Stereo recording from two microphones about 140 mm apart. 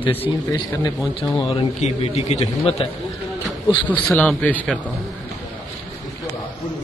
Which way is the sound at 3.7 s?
35° left (ahead or behind).